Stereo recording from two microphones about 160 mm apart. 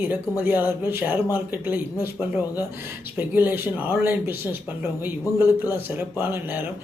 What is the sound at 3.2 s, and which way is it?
Speech, 10° right (ahead or behind).